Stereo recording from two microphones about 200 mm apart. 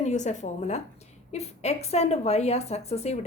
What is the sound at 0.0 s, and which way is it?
Speech, 35° left (ahead or behind).